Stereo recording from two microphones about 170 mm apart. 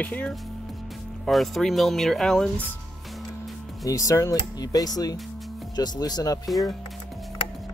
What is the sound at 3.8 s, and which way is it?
Speech, 20° left (ahead or behind).